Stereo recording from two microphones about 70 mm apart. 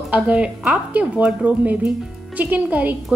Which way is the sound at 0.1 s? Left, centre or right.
Centre.